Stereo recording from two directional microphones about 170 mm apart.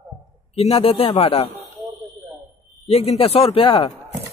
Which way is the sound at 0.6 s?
35° left (ahead or behind).